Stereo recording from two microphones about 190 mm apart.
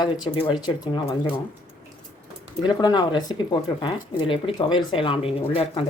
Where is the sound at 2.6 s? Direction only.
20° left (ahead or behind).